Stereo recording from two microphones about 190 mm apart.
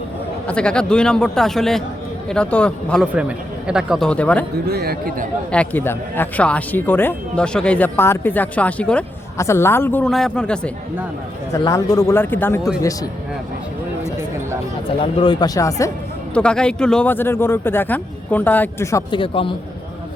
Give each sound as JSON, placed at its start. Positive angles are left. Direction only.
{"t": 0.4, "sound": "a man's voice", "side_deg": 5}
{"t": 3.2, "sound": "a man's voice", "side_deg": -5}
{"t": 4.7, "sound": "a man's voice", "side_deg": -55}
{"t": 5.5, "sound": "speech", "side_deg": 10}
{"t": 11.5, "sound": "speech", "side_deg": 20}
{"t": 15.0, "sound": "speech", "side_deg": 25}
{"t": 16.3, "sound": "speech", "side_deg": 5}
{"t": 19.2, "sound": "speech", "side_deg": 25}